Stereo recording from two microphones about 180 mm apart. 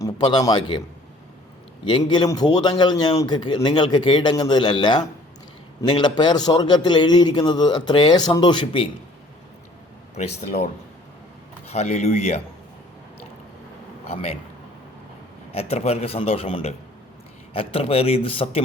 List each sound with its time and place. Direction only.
0.0 s speech: 25° left (ahead or behind)
1.8 s a man's voice: 25° left (ahead or behind)
10.2 s a man's voice: 40° left (ahead or behind)
11.7 s a man's voice: 40° left (ahead or behind)
14.1 s a man's voice: 35° left (ahead or behind)
15.5 s a man's voice: 35° left (ahead or behind)